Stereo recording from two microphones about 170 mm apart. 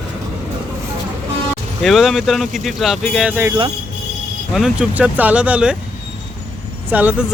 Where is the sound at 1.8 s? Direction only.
Centre (ahead or behind).